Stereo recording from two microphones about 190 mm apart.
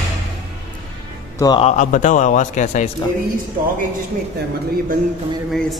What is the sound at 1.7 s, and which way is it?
A man's voice, 40° left (ahead or behind).